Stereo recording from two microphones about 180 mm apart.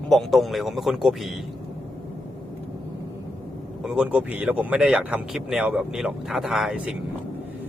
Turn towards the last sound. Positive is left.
turn(degrees=-5)  # may be behind; listen again after turning